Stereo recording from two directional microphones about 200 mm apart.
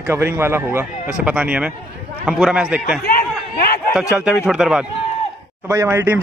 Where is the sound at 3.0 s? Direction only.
50° left (ahead or behind).